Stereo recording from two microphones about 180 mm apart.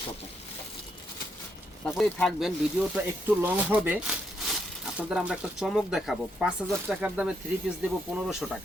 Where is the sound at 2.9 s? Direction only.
10° right (ahead or behind).